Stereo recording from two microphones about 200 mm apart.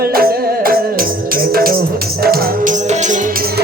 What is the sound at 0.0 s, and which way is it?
Music, 50° right (ahead or behind).